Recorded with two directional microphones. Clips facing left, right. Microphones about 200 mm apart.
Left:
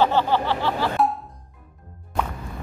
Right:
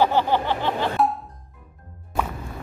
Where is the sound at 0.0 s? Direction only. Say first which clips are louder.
Even; 15° right (ahead or behind).